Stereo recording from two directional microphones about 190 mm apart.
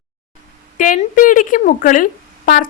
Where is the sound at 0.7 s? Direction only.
45° left (ahead or behind).